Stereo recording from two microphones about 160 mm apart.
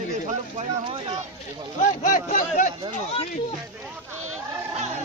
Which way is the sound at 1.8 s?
55° left (ahead or behind).